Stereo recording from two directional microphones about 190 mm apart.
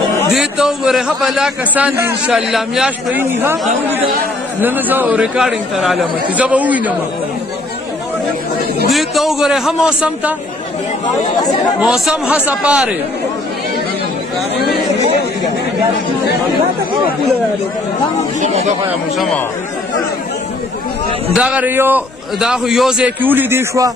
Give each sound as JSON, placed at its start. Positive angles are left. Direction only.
{"t": 0.3, "sound": "a man's voice", "side_deg": 0}
{"t": 4.6, "sound": "a man's voice", "side_deg": -10}
{"t": 8.9, "sound": "a man's voice", "side_deg": 0}
{"t": 11.8, "sound": "a man's voice", "side_deg": -5}
{"t": 18.4, "sound": "speech", "side_deg": -35}
{"t": 19.1, "sound": "a man's voice", "side_deg": 0}
{"t": 21.4, "sound": "a man's voice", "side_deg": -5}